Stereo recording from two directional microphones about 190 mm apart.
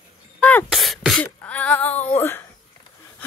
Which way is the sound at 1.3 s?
5° left (ahead or behind).